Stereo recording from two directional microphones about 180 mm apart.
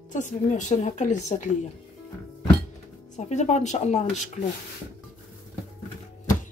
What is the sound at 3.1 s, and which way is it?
Speech, 40° left (ahead or behind).